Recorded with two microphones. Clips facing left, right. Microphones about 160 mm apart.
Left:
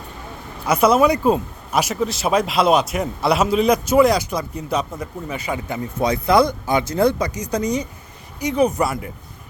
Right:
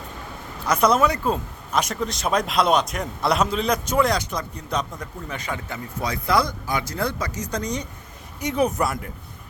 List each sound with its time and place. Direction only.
0.6 s speech: 10° left (ahead or behind)